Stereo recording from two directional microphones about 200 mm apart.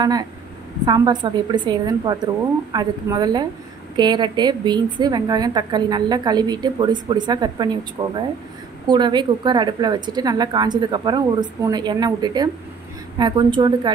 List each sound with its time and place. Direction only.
0.0 s a woman's voice: 20° right (ahead or behind)